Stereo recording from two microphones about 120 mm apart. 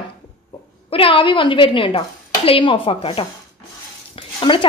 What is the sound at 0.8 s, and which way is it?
A woman's voice, 50° left (ahead or behind).